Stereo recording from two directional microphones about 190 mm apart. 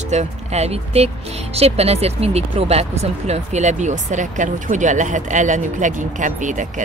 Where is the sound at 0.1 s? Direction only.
35° right (ahead or behind).